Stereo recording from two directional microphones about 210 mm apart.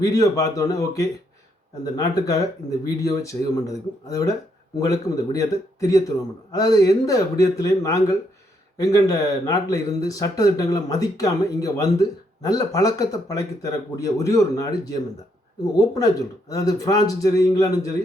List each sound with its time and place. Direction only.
0.0 s speech: 15° left (ahead or behind)
16.5 s speech: 15° left (ahead or behind)